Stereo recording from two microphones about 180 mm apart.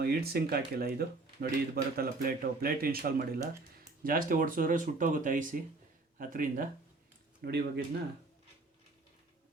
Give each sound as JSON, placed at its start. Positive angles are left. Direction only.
{"t": 0.0, "sound": "speech", "side_deg": -60}
{"t": 7.4, "sound": "speech", "side_deg": -60}